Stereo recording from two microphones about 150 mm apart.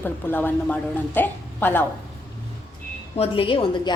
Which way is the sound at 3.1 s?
40° left (ahead or behind).